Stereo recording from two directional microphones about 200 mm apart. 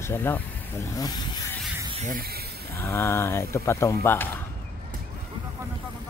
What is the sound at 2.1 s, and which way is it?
Speech, 50° right (ahead or behind).